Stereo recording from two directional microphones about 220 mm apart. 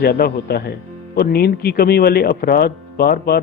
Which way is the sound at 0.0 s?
45° left (ahead or behind).